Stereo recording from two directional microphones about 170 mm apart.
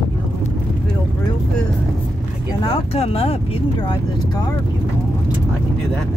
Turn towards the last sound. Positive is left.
turn(degrees=25)  # may be behind; listen again after turning